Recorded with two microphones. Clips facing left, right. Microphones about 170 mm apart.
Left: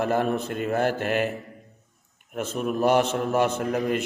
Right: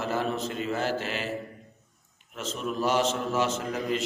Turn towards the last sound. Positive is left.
turn(degrees=55)  # may be behind; listen again after turning